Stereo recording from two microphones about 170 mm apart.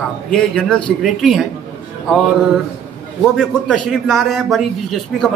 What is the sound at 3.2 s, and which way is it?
A man's voice, 5° left (ahead or behind).